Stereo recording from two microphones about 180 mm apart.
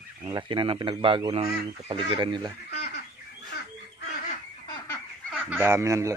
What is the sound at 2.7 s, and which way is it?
Fowl, 65° left (ahead or behind).